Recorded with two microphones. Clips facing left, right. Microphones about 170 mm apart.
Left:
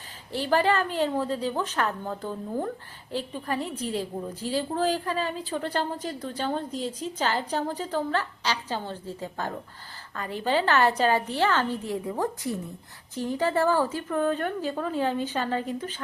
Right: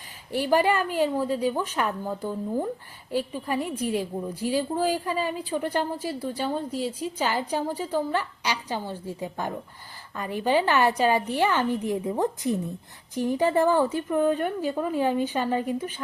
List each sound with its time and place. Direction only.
0.3 s a woman's voice: 10° right (ahead or behind)